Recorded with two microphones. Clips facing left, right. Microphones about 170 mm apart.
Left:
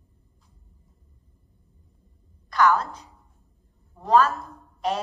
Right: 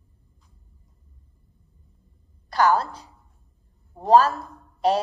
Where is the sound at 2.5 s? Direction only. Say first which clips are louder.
Right 1 dB; 35° right (ahead or behind).